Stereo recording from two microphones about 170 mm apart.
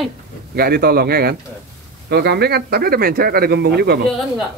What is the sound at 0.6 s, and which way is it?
Speech, 65° right (ahead or behind).